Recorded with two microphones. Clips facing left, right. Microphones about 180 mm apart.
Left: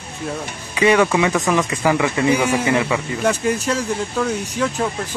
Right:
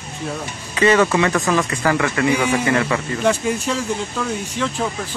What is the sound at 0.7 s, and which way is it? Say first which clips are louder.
Speech: even; 10° left (ahead or behind).